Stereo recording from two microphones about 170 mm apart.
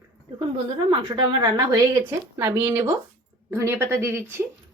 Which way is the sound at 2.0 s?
15° right (ahead or behind).